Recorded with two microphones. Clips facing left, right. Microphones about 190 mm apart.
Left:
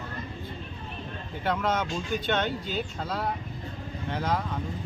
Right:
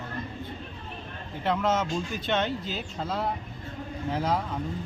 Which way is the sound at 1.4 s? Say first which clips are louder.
Right 2 dB; centre (ahead or behind).